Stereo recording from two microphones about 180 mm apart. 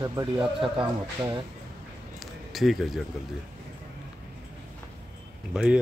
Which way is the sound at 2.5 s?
Centre (ahead or behind).